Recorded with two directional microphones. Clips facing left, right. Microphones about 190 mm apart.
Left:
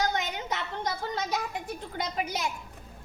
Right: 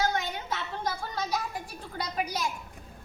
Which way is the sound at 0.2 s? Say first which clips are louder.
Left 1 dB; 20° left (ahead or behind).